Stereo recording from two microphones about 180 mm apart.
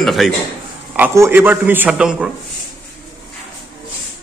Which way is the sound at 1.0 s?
10° right (ahead or behind).